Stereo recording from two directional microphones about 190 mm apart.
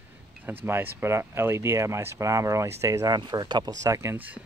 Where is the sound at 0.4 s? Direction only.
10° right (ahead or behind).